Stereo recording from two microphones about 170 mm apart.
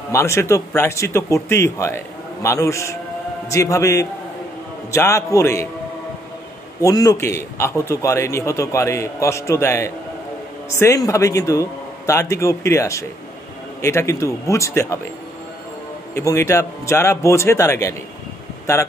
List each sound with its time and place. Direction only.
0.1 s a man's voice: 15° left (ahead or behind)
6.8 s a man's voice: 20° left (ahead or behind)
16.2 s a man's voice: 15° left (ahead or behind)